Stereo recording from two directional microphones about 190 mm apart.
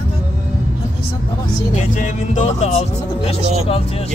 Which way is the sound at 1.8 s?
40° left (ahead or behind).